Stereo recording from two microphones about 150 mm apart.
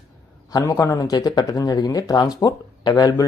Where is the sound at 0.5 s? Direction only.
25° left (ahead or behind).